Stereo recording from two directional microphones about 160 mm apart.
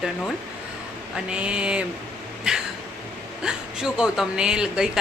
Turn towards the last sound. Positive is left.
turn(degrees=-5)  # may be behind; listen again after turning